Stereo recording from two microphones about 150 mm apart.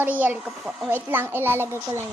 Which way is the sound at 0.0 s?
10° right (ahead or behind).